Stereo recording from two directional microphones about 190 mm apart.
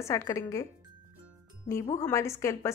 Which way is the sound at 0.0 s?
15° left (ahead or behind).